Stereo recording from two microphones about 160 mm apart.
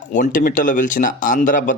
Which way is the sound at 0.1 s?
55° left (ahead or behind).